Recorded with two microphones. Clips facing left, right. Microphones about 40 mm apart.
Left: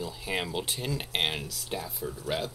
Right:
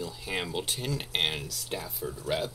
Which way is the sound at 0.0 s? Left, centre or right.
Centre.